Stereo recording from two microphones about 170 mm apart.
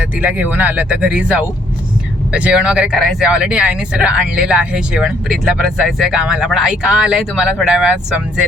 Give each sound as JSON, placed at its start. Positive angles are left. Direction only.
{"t": 0.2, "sound": "speech", "side_deg": -10}